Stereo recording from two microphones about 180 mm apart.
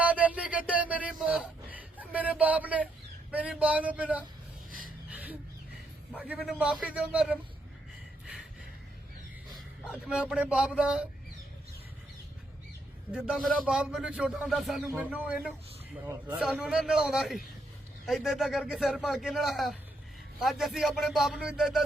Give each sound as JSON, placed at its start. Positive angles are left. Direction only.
{"t": 0.0, "sound": "a sound", "side_deg": -10}
{"t": 3.3, "sound": "a man's voice", "side_deg": -5}
{"t": 5.0, "sound": "a sound", "side_deg": -10}
{"t": 6.1, "sound": "a man's voice", "side_deg": -10}
{"t": 9.6, "sound": "speech", "side_deg": 0}
{"t": 13.1, "sound": "speech", "side_deg": -5}